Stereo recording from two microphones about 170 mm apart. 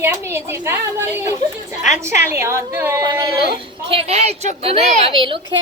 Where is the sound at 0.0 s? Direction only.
15° right (ahead or behind).